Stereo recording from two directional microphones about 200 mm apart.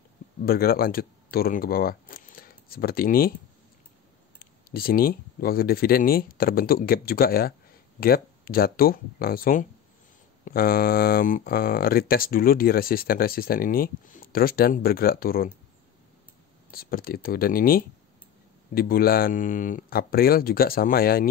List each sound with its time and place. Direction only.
0.4 s speech: 50° left (ahead or behind)
4.4 s speech: 50° left (ahead or behind)
16.7 s speech: 50° left (ahead or behind)